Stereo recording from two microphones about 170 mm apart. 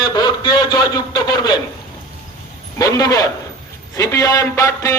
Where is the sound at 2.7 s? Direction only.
20° left (ahead or behind).